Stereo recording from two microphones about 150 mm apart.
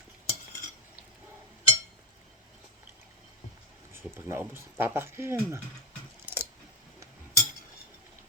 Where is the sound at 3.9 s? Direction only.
15° right (ahead or behind).